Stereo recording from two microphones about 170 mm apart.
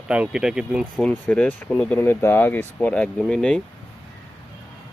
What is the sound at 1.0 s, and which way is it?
Speech, 5° left (ahead or behind).